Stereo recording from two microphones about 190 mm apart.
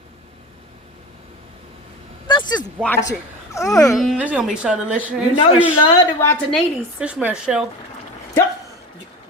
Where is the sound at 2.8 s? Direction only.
10° left (ahead or behind).